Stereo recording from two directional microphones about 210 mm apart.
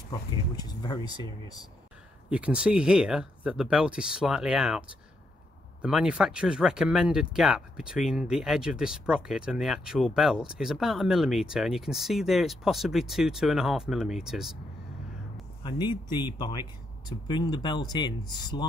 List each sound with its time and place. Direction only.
0.6 s speech: 20° left (ahead or behind)
2.2 s speech: 5° right (ahead or behind)
16.3 s speech: 20° left (ahead or behind)